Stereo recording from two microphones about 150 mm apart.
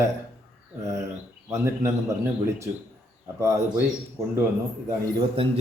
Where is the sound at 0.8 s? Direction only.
20° right (ahead or behind).